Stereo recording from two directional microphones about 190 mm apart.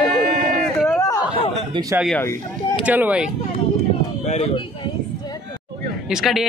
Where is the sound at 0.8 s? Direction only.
15° left (ahead or behind).